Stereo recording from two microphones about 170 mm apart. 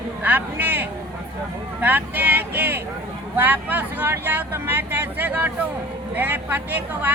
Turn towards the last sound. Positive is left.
turn(degrees=-10)  # may be behind; listen again after turning